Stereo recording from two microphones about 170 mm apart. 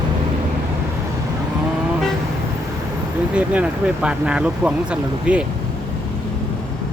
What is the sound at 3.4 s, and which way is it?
Speech, 5° right (ahead or behind).